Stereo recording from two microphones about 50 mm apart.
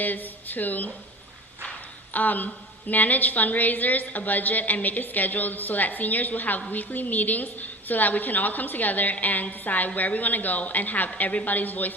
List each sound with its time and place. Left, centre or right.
0.0 s a woman's voice: left
2.1 s a woman's voice: left